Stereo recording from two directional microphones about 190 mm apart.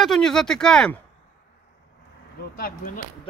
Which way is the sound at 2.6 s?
45° left (ahead or behind).